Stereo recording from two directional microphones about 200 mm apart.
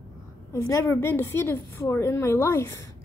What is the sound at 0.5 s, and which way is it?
A woman's voice, 15° left (ahead or behind).